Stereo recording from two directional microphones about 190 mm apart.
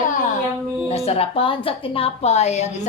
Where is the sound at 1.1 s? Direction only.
30° left (ahead or behind).